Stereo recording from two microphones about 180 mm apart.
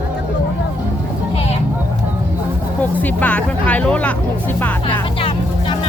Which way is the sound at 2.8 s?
10° left (ahead or behind).